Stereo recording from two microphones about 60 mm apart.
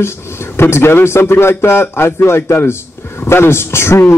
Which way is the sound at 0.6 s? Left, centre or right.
Left.